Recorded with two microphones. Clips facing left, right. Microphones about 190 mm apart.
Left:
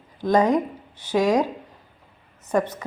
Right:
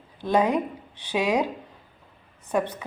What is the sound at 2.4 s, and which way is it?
Speech, 10° right (ahead or behind).